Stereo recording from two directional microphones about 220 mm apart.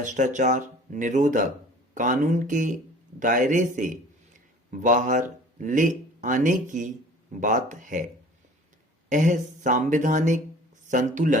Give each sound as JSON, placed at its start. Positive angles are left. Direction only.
{"t": 0.0, "sound": "a man's voice", "side_deg": -35}
{"t": 9.0, "sound": "a man's voice", "side_deg": -35}